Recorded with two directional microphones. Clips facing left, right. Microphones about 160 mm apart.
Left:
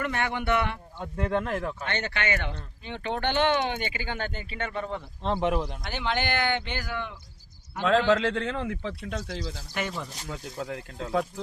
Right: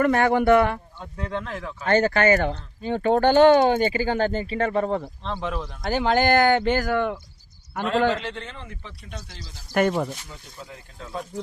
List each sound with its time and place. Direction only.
0.0 s speech: 45° right (ahead or behind)
1.1 s a man's voice: 55° left (ahead or behind)
1.8 s speech: 45° right (ahead or behind)
5.2 s a man's voice: 20° left (ahead or behind)
5.8 s speech: 40° right (ahead or behind)
8.3 s speech: 90° left
9.7 s speech: 55° right (ahead or behind)
10.2 s speech: 70° left (ahead or behind)